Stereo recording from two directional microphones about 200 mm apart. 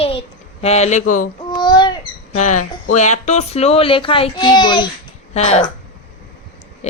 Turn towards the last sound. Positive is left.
turn(degrees=35)  # may be behind; listen again after turning